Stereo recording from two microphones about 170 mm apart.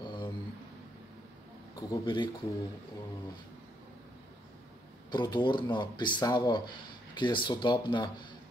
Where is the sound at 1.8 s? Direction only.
25° left (ahead or behind).